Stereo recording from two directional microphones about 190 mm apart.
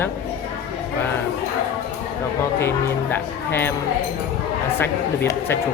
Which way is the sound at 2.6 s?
10° left (ahead or behind).